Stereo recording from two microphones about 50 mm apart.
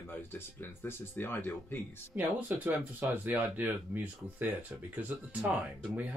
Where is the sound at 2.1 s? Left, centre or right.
Right.